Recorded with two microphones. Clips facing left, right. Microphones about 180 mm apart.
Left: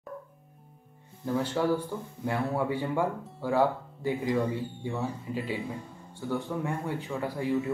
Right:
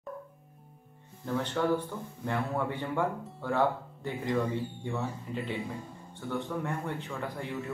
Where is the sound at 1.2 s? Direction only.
5° left (ahead or behind).